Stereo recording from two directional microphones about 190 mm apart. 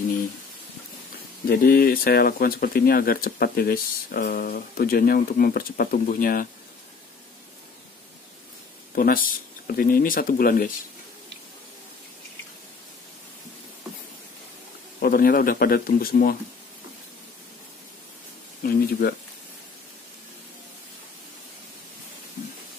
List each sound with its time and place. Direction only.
1.5 s speech: 50° left (ahead or behind)
8.9 s speech: 50° left (ahead or behind)
15.0 s speech: 50° left (ahead or behind)
18.6 s speech: 50° left (ahead or behind)